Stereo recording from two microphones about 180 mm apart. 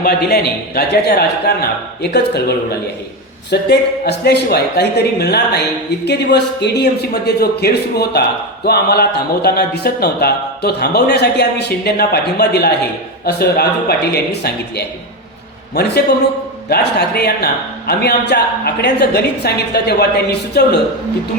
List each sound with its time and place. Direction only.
0.0 s speech: 60° left (ahead or behind)